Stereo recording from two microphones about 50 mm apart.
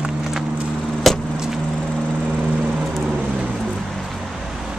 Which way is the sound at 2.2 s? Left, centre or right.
Right.